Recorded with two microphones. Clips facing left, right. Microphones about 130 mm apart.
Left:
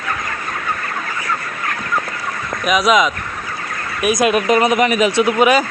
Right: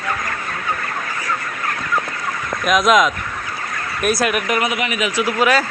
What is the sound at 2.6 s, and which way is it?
Speech, centre (ahead or behind).